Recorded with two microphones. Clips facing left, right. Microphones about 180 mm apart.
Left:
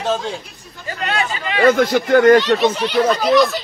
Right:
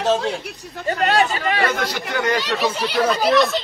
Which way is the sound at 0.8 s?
35° right (ahead or behind).